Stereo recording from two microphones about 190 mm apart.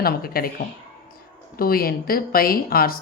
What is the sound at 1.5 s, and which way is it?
A woman's voice, 50° left (ahead or behind).